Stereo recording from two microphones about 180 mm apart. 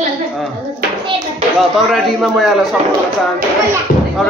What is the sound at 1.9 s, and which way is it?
Speech, centre (ahead or behind).